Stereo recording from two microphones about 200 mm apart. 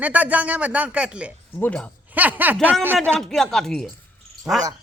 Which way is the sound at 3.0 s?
Centre (ahead or behind).